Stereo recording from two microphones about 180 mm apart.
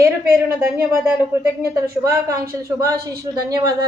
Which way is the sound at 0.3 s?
15° right (ahead or behind).